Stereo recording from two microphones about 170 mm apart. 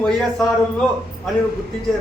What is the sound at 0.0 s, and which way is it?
A man's voice, centre (ahead or behind).